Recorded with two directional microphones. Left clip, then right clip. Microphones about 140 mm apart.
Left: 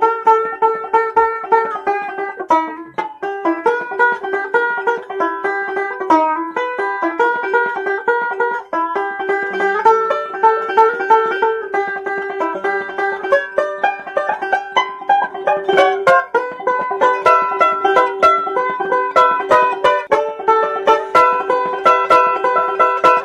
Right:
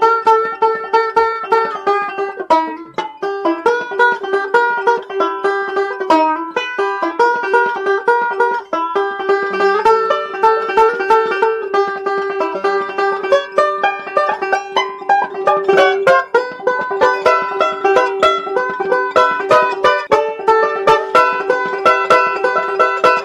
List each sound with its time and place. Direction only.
0.0 s music: 30° right (ahead or behind)
19.3 s music: 35° right (ahead or behind)
21.8 s music: 15° right (ahead or behind)